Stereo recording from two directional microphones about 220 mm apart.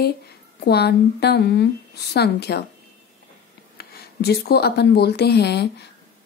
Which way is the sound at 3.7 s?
45° left (ahead or behind).